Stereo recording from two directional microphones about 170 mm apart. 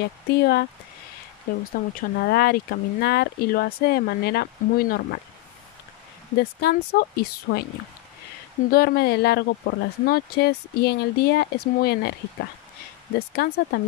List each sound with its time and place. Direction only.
0.0 s speech: 70° left (ahead or behind)
6.3 s speech: 65° left (ahead or behind)
8.6 s speech: 65° left (ahead or behind)